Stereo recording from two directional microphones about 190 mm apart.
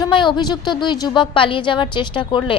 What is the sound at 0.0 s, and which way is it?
A woman's voice, 25° left (ahead or behind).